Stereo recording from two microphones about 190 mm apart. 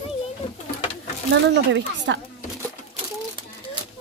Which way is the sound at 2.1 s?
65° right (ahead or behind).